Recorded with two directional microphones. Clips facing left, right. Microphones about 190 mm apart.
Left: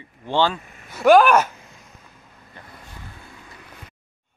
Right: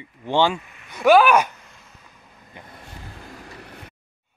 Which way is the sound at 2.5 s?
15° right (ahead or behind).